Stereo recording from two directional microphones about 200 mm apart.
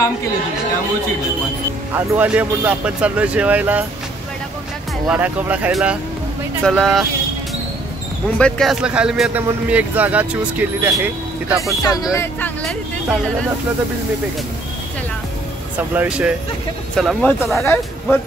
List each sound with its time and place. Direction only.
2.0 s speech: 5° right (ahead or behind)
5.0 s a man's voice: 5° right (ahead or behind)
8.4 s a man's voice: 5° left (ahead or behind)
11.8 s speech: 15° left (ahead or behind)
15.9 s a man's voice: 10° right (ahead or behind)